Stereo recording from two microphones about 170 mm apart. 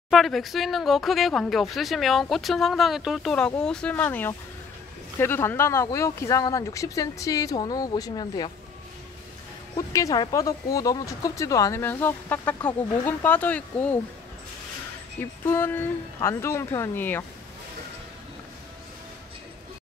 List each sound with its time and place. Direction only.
0.1 s speech: centre (ahead or behind); by 8.5 s 25° left (ahead or behind)
9.8 s speech: 20° left (ahead or behind)
15.4 s speech: 15° left (ahead or behind)